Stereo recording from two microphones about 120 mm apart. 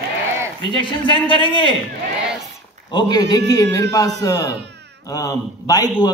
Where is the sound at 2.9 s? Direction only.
35° left (ahead or behind).